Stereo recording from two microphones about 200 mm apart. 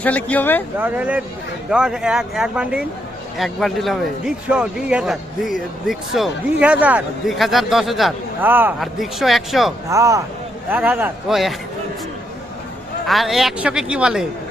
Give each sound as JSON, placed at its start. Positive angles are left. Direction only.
{"t": 0.0, "sound": "speech", "side_deg": 10}
{"t": 0.8, "sound": "a man's voice", "side_deg": -10}
{"t": 9.9, "sound": "speech", "side_deg": -15}
{"t": 13.1, "sound": "a man's voice", "side_deg": 0}